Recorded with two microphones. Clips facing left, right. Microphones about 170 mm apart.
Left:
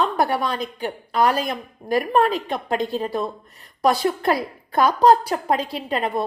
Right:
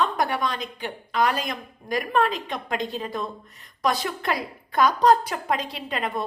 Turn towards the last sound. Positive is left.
turn(degrees=35)  # may be behind; listen again after turning